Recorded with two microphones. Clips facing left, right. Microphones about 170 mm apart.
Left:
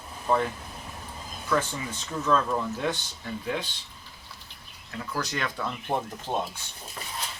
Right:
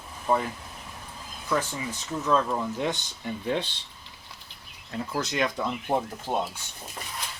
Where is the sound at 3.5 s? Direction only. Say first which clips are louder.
Right 3 dB; 30° right (ahead or behind).